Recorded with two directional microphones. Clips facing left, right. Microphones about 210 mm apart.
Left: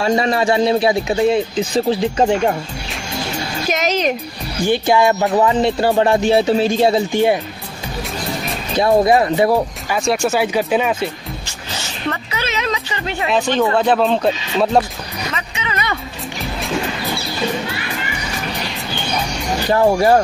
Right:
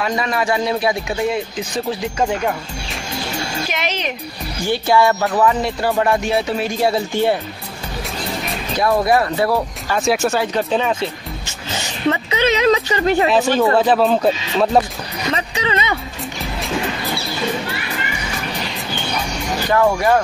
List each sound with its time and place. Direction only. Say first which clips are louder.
0.0 s music: left 4 dB; 30° left (ahead or behind)
3.7 s speech: left 10 dB; 40° left (ahead or behind)
4.6 s music: left 1 dB; 15° left (ahead or behind)
8.7 s music: left 3 dB; 25° left (ahead or behind)
9.9 s speech: even; centre (ahead or behind)
10.4 s speech: left 2 dB; 10° left (ahead or behind)
12.1 s a woman's voice: right 7 dB; 25° right (ahead or behind)
13.6 s speech: left 1 dB; 5° right (ahead or behind)
15.3 s music: right 8 dB; 35° right (ahead or behind)
19.7 s speech: left 2 dB; 30° left (ahead or behind)